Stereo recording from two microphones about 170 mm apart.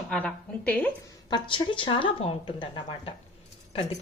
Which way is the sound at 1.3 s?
30° left (ahead or behind).